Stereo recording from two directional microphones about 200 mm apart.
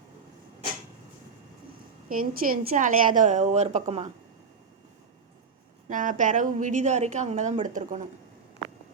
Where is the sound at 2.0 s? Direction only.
45° right (ahead or behind).